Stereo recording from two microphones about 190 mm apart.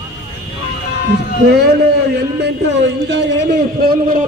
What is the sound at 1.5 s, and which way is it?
Speech, 60° right (ahead or behind).